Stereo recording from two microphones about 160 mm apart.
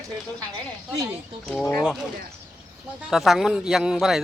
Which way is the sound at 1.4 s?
Centre (ahead or behind).